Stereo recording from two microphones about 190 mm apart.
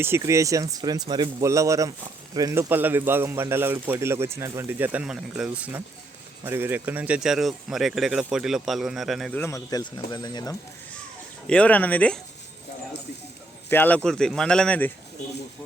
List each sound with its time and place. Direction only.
0.0 s speech: 15° right (ahead or behind)
9.4 s speech: 15° left (ahead or behind)
11.4 s speech: 5° left (ahead or behind)
13.7 s speech: 10° left (ahead or behind)